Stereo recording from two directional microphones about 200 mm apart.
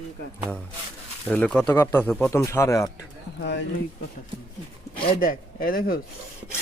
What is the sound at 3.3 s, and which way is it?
Speech, 60° left (ahead or behind).